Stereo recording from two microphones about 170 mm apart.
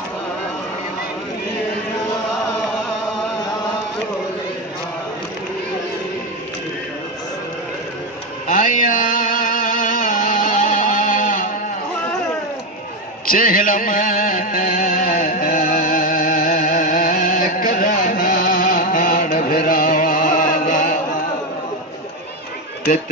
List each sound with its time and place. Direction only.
8.5 s music: 50° left (ahead or behind)
13.3 s music: 55° left (ahead or behind)